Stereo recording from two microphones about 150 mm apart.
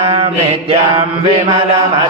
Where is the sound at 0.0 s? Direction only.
40° right (ahead or behind).